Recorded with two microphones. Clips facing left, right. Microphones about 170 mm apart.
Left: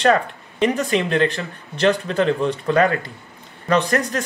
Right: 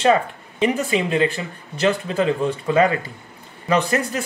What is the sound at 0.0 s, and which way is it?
Speech, 5° right (ahead or behind).